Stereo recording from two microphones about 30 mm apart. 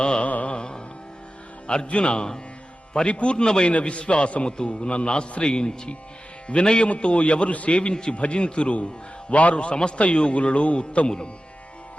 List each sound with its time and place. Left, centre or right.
0.0 s music: left
1.6 s a man's voice: left
3.8 s a man's voice: left
9.3 s a man's voice: left